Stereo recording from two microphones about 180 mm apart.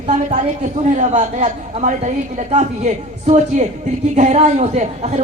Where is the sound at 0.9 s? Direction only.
40° right (ahead or behind).